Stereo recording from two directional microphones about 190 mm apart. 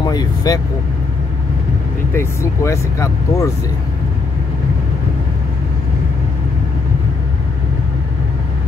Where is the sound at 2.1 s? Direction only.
15° left (ahead or behind).